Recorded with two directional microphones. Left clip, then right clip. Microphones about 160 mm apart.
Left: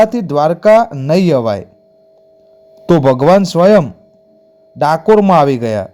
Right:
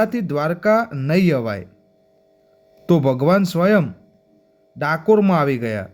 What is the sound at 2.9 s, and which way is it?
A man's voice, 30° left (ahead or behind).